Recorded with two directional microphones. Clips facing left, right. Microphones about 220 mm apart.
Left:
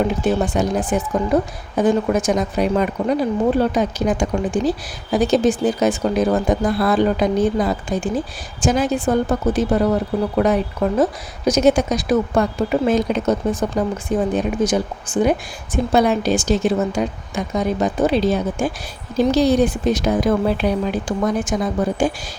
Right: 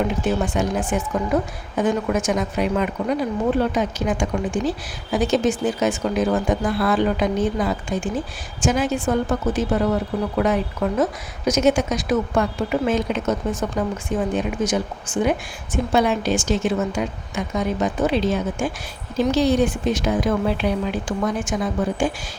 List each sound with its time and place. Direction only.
0.4 s a woman's voice: 35° left (ahead or behind)